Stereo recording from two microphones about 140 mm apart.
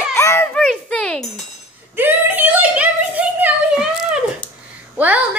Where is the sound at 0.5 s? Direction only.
5° left (ahead or behind).